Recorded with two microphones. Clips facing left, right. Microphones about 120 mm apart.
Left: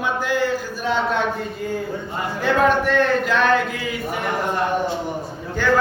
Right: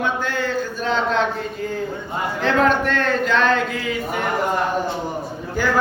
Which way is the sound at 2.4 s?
10° left (ahead or behind).